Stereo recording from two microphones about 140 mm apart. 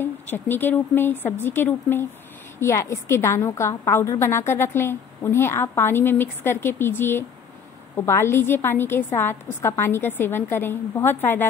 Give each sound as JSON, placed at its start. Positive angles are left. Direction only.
{"t": 0.0, "sound": "a woman's voice", "side_deg": 15}